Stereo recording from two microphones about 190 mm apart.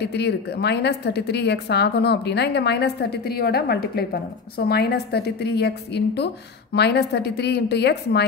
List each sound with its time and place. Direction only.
0.0 s a woman's voice: 60° left (ahead or behind)